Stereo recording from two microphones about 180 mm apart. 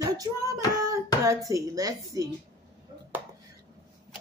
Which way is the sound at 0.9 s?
15° right (ahead or behind).